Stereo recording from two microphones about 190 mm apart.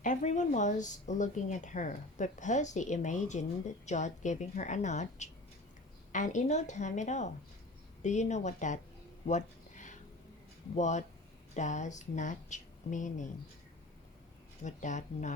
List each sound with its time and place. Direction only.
0.0 s a woman's voice: 40° left (ahead or behind)
9.2 s a sound: 40° left (ahead or behind)
10.8 s a woman's voice: 40° left (ahead or behind)
14.6 s a woman's voice: 40° left (ahead or behind)